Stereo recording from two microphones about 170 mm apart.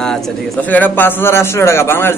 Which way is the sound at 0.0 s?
5° left (ahead or behind).